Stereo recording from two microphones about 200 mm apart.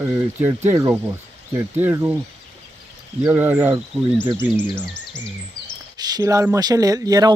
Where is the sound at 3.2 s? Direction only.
10° right (ahead or behind).